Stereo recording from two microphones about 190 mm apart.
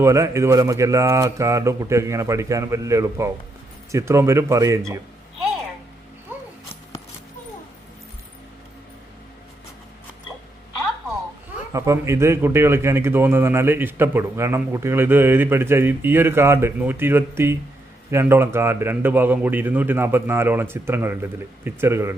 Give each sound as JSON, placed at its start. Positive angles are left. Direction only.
{"t": 0.0, "sound": "speech", "side_deg": -15}
{"t": 11.7, "sound": "speech", "side_deg": -15}